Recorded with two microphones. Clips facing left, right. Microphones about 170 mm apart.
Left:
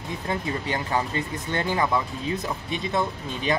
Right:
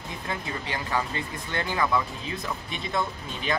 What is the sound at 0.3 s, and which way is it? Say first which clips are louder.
Speech: left 5 dB; 25° left (ahead or behind).